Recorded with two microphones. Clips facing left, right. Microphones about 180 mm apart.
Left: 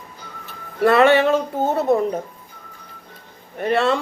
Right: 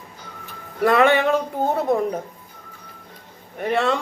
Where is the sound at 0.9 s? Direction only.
15° right (ahead or behind).